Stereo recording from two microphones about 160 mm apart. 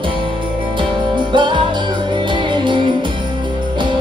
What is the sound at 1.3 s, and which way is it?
Music, 30° right (ahead or behind).